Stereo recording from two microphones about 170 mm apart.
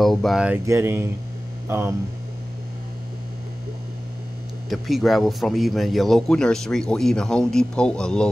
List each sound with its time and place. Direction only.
0.0 s speech: centre (ahead or behind)
0.7 s speech: 15° right (ahead or behind)
4.6 s speech: centre (ahead or behind)